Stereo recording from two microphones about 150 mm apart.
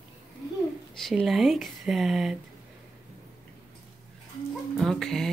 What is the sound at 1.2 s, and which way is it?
Speech, centre (ahead or behind).